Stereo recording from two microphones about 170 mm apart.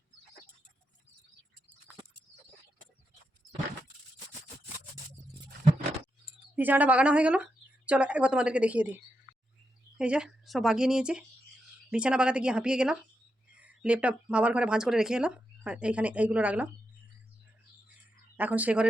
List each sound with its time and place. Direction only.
6.6 s speech: 10° right (ahead or behind)
10.0 s speech: 5° right (ahead or behind)
18.3 s speech: 10° right (ahead or behind)